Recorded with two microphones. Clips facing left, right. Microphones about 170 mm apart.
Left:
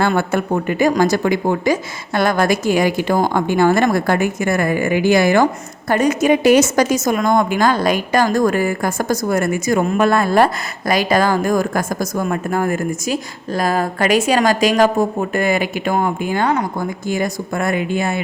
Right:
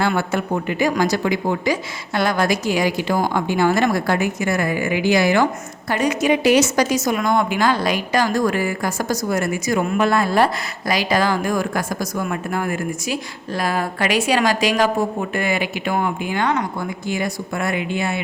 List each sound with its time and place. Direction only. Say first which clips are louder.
0.2 s a woman's voice: left 3 dB; 50° left (ahead or behind); by 16.6 s 35° left (ahead or behind)
17.1 s a woman's voice: left 3 dB; 45° left (ahead or behind)